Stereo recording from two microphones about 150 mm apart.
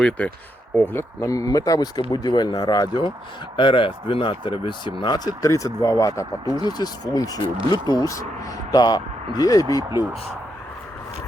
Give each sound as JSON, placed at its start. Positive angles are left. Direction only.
{"t": 0.8, "sound": "speech", "side_deg": 15}